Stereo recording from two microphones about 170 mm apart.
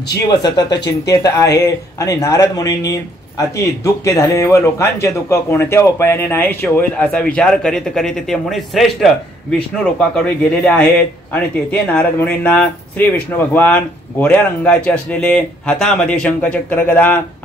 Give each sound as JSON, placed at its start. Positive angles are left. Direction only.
{"t": 0.3, "sound": "speech", "side_deg": 25}
{"t": 10.2, "sound": "speech", "side_deg": 5}